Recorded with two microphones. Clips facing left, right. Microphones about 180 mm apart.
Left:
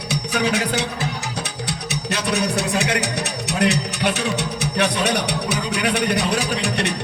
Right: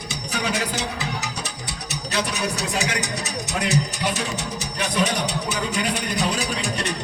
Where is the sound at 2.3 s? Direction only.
60° left (ahead or behind).